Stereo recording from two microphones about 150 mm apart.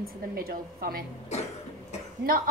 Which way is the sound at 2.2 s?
90° right.